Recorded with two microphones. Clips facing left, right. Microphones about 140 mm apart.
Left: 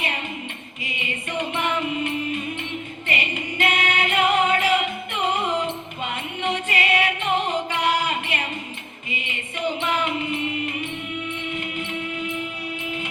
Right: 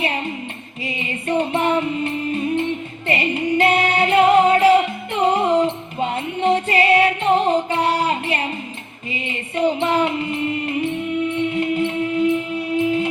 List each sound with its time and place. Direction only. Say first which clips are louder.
0.9 s music: right 8 dB; 35° right (ahead or behind)